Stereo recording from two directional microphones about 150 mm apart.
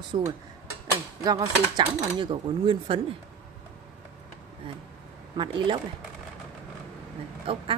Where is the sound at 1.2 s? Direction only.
25° right (ahead or behind).